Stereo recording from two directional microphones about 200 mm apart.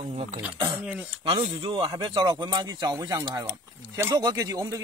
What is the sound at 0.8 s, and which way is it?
Speech, 5° right (ahead or behind).